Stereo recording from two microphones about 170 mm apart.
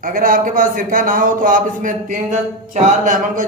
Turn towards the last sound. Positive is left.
turn(degrees=-50)  # may be behind; listen again after turning